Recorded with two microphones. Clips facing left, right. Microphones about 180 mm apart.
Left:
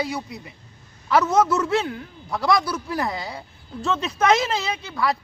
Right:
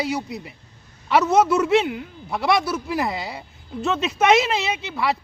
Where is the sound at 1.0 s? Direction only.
25° right (ahead or behind); by 3.4 s 5° right (ahead or behind).